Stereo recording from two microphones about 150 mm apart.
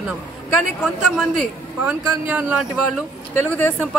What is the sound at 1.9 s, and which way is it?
Speech, 10° right (ahead or behind).